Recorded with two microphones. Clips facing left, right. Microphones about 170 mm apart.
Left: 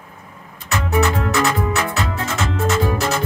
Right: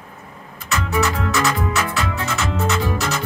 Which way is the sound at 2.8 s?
30° left (ahead or behind).